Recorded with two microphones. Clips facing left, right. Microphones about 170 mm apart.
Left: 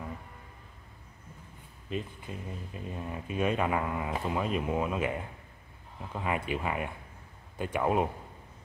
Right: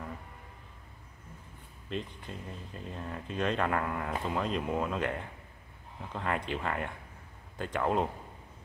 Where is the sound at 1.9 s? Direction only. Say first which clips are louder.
Left 1 dB; 5° left (ahead or behind).